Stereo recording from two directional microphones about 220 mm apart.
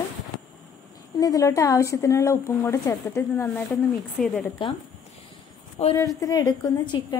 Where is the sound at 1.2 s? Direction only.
15° left (ahead or behind).